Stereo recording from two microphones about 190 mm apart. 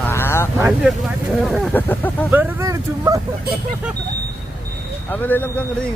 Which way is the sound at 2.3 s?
15° right (ahead or behind).